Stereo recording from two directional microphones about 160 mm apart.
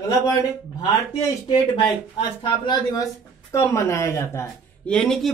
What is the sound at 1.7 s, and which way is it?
Speech, 30° left (ahead or behind).